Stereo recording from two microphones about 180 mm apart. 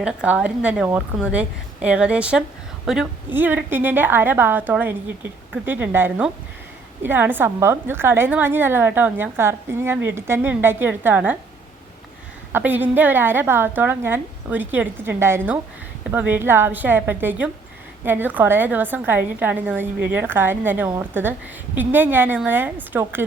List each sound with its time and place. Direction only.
0.0 s a woman's voice: 5° right (ahead or behind)
12.5 s a woman's voice: 10° right (ahead or behind)